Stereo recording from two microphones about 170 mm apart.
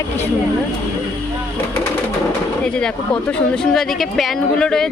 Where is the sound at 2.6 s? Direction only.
5° left (ahead or behind).